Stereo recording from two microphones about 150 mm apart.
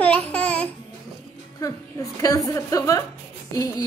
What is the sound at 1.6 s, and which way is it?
A woman's voice, 25° left (ahead or behind).